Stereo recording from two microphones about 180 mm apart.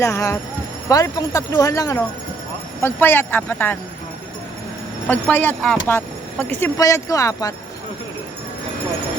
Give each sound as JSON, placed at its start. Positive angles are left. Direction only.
{"t": 0.0, "sound": "speech", "side_deg": 15}
{"t": 5.0, "sound": "speech", "side_deg": 10}